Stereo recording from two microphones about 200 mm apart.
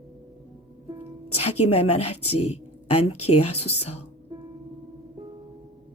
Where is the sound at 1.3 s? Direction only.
30° left (ahead or behind).